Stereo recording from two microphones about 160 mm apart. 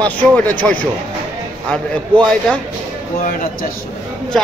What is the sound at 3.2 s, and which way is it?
Speech, 55° left (ahead or behind).